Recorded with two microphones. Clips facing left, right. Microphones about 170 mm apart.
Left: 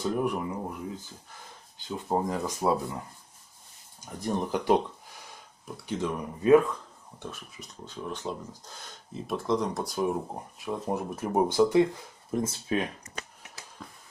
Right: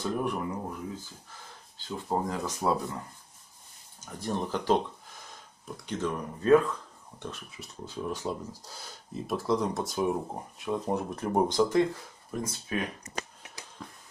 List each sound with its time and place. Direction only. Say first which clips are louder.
0.2 s speech: left 2 dB; 10° left (ahead or behind)
1.8 s speech: left 2 dB; 15° left (ahead or behind)
4.0 s speech: left 2 dB; 15° left (ahead or behind)
5.9 s speech: left 1 dB; 10° left (ahead or behind)
7.2 s speech: right 1 dB; centre (ahead or behind)
12.3 s speech: left 5 dB; 25° left (ahead or behind)
13.8 s a sound: right 1 dB; centre (ahead or behind)